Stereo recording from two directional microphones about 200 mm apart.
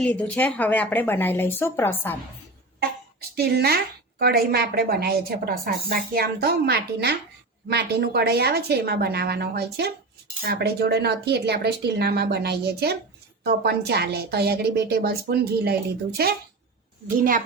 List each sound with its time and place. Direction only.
0.0 s speech: 5° left (ahead or behind)
3.2 s a woman's voice: 50° right (ahead or behind)